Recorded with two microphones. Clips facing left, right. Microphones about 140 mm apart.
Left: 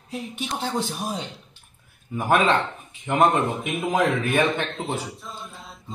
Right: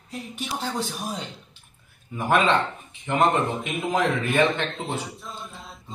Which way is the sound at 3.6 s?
Centre (ahead or behind).